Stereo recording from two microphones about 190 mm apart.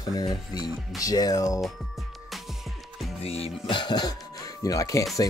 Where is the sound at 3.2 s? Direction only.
30° left (ahead or behind).